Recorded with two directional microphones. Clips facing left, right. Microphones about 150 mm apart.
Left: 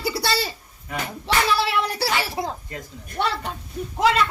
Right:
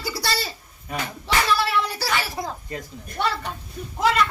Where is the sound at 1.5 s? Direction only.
30° left (ahead or behind).